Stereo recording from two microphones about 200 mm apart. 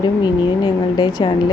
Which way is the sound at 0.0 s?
20° left (ahead or behind).